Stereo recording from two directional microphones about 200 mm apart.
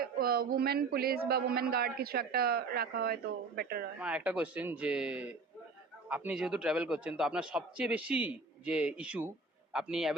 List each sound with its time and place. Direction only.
0.0 s a man's voice: 50° right (ahead or behind)
4.0 s a man's voice: 5° right (ahead or behind)